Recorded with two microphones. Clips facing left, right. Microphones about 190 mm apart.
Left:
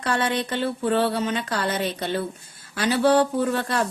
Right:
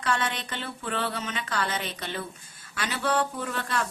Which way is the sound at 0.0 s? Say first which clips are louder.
Left 5 dB; 35° left (ahead or behind).